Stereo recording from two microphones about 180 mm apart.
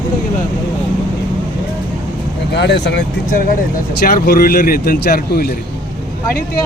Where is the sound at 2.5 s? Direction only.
70° left (ahead or behind).